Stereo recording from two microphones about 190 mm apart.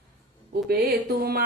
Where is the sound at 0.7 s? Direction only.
55° right (ahead or behind).